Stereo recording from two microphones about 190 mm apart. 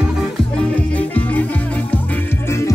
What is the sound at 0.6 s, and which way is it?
Music, 5° left (ahead or behind).